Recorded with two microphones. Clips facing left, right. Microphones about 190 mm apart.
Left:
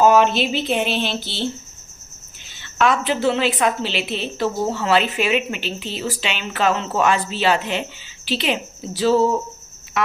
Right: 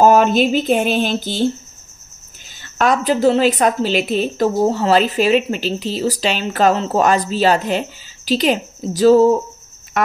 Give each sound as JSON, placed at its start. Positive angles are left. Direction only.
{"t": 0.0, "sound": "speech", "side_deg": -45}
{"t": 2.6, "sound": "a woman's voice", "side_deg": -40}
{"t": 9.9, "sound": "a sound", "side_deg": -50}